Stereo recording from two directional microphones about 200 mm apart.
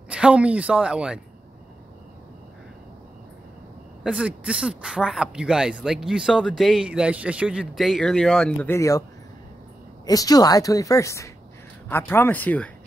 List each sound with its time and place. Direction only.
0.1 s speech: 5° right (ahead or behind)
4.0 s speech: 5° right (ahead or behind); by 9.0 s 15° left (ahead or behind)
10.0 s a woman's voice: 20° left (ahead or behind)